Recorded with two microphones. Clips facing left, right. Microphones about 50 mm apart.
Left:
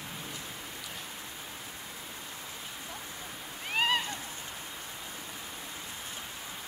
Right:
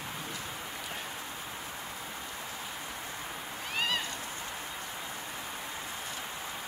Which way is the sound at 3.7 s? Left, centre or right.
Left.